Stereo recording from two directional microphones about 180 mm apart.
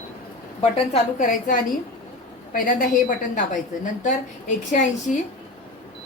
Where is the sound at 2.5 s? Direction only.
50° left (ahead or behind).